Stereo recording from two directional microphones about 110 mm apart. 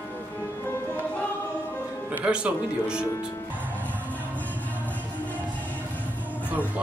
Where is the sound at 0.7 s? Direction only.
20° left (ahead or behind).